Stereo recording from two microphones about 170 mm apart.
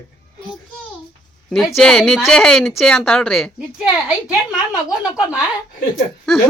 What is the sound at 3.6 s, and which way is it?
Speech, 5° right (ahead or behind).